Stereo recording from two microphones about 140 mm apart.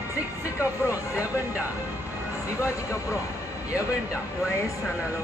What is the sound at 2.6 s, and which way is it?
Speech, 20° left (ahead or behind).